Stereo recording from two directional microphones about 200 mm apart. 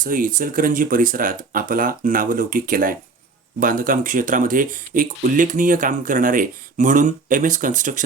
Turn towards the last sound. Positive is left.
turn(degrees=-40)  # may be behind; listen again after turning